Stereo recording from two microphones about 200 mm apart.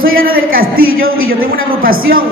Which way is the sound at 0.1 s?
45° right (ahead or behind).